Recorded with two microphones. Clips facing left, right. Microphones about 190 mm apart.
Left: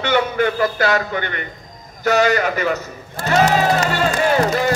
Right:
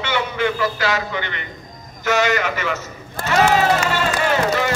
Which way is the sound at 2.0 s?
35° left (ahead or behind).